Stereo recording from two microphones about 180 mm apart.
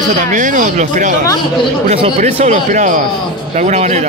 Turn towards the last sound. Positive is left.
turn(degrees=-40)  # may be behind; listen again after turning